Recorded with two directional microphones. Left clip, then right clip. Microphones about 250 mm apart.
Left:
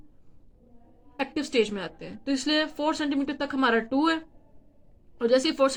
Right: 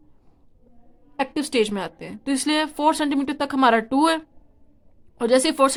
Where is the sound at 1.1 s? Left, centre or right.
Right.